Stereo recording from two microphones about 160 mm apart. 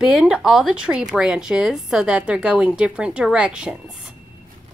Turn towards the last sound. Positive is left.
turn(degrees=-5)  # may be behind; listen again after turning